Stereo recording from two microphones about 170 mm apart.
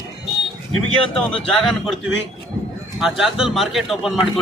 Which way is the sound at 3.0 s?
Centre (ahead or behind).